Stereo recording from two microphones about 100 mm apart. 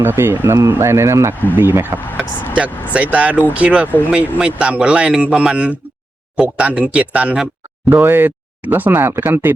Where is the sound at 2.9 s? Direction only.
15° right (ahead or behind).